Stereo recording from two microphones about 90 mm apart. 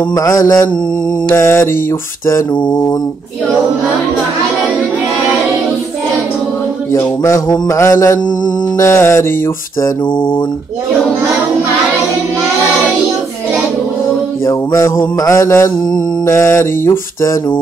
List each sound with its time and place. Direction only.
0.1 s mantra: 40° left (ahead or behind)
6.9 s mantra: 35° left (ahead or behind)
10.1 s a sound: 60° left (ahead or behind)
14.4 s mantra: 35° left (ahead or behind)